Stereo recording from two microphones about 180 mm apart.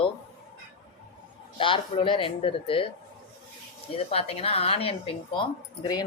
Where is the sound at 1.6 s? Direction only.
30° left (ahead or behind).